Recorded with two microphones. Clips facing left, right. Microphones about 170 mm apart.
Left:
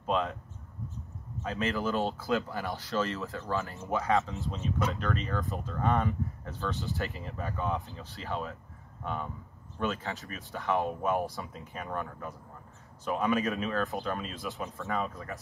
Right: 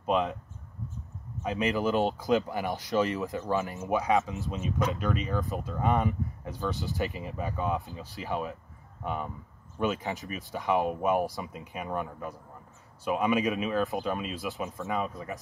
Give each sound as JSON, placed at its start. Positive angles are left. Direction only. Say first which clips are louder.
{"t": 0.0, "sound": "speech", "louder": "right 3 dB", "side_deg": -15}
{"t": 1.4, "sound": "speech", "louder": "right 3 dB", "side_deg": -15}